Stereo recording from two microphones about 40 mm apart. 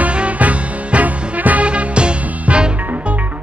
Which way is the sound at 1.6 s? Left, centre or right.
Right.